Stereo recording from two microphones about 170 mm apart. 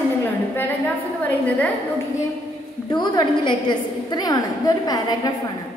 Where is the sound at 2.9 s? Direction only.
25° left (ahead or behind).